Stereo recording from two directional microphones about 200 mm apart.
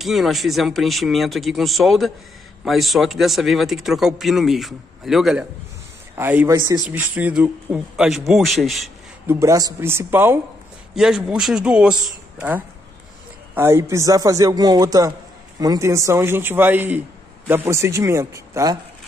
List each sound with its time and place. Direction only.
0.0 s speech: centre (ahead or behind)
9.3 s speech: 15° right (ahead or behind)